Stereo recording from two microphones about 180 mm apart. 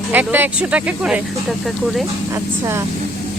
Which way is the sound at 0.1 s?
10° right (ahead or behind).